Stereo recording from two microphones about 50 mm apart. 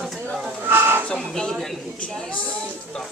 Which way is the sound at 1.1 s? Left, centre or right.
Centre.